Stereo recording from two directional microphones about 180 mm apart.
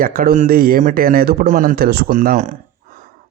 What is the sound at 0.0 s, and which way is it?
A man's voice, 55° right (ahead or behind).